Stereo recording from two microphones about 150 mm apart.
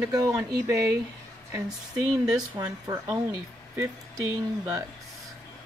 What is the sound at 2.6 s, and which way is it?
Speech, 20° right (ahead or behind).